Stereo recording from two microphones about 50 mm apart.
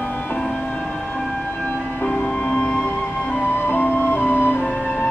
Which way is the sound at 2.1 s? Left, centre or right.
Left.